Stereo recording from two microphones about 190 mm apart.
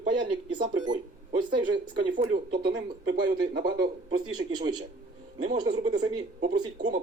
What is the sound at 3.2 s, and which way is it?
Speech, 65° right (ahead or behind).